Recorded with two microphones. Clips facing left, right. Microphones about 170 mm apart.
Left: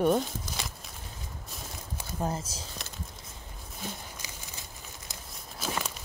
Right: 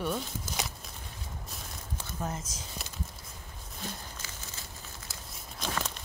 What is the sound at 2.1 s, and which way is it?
Speech, 30° left (ahead or behind).